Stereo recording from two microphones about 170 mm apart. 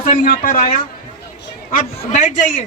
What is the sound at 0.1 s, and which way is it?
Speech, 50° left (ahead or behind).